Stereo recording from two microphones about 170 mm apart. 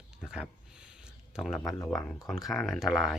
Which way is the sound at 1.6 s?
20° left (ahead or behind).